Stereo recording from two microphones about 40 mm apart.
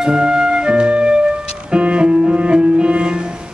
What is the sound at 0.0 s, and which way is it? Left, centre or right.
Music, centre.